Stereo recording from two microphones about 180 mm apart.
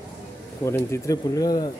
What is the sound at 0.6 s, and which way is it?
Speech, 15° left (ahead or behind).